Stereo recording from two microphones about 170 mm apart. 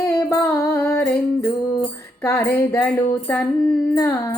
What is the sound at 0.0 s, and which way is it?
Music, 15° left (ahead or behind).